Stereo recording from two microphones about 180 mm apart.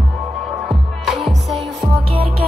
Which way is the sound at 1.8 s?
30° right (ahead or behind).